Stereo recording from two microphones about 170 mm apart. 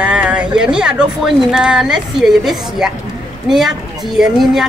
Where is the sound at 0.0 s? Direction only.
5° right (ahead or behind).